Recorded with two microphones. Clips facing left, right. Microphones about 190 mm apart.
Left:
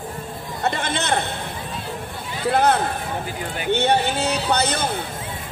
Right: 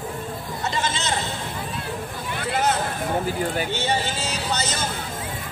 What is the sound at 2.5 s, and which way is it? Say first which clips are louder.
Music: left 5 dB; 60° left (ahead or behind).